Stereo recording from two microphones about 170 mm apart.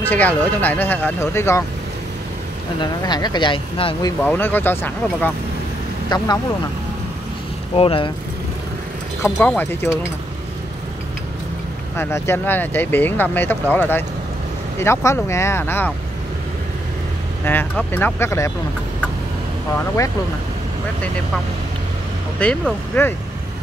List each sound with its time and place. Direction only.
0.1 s speech: 10° left (ahead or behind)
2.8 s speech: 25° left (ahead or behind)
4.2 s speech: 10° left (ahead or behind)
6.0 s speech: 25° left (ahead or behind)
7.7 s speech: 30° left (ahead or behind)
9.5 s speech: 10° left (ahead or behind)
12.0 s speech: 15° left (ahead or behind)
17.5 s speech: 10° left (ahead or behind)
22.4 s speech: 5° left (ahead or behind)